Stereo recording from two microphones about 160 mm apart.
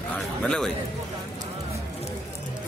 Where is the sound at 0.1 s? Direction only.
5° left (ahead or behind).